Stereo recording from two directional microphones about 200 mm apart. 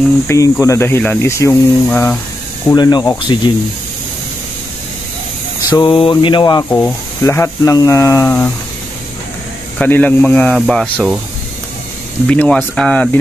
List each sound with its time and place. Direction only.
0.3 s speech: 15° left (ahead or behind)
2.7 s a sound: 20° left (ahead or behind)
5.6 s a sound: 20° left (ahead or behind)
6.8 s speech: 10° left (ahead or behind)
9.8 s speech: 10° left (ahead or behind)
12.3 s speech: 5° left (ahead or behind)